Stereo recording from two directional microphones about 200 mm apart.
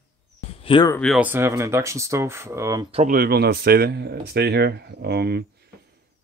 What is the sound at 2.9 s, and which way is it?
Speech, 40° right (ahead or behind).